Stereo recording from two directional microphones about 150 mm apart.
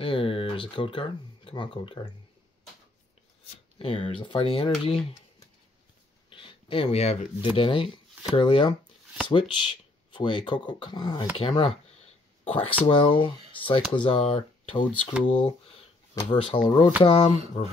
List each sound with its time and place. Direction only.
0.0 s speech: 35° left (ahead or behind)
3.7 s speech: 40° left (ahead or behind)
6.3 s a sound: 35° left (ahead or behind)
7.5 s speech: 35° left (ahead or behind)